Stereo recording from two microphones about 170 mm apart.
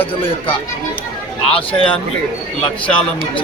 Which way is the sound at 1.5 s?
30° left (ahead or behind).